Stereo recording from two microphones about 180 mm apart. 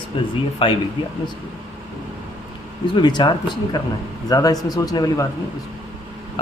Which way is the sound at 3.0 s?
25° left (ahead or behind).